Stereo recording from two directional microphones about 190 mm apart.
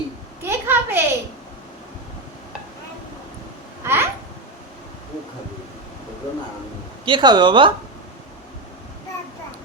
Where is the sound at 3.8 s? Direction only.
10° right (ahead or behind).